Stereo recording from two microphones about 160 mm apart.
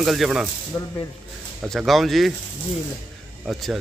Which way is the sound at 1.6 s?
Centre (ahead or behind).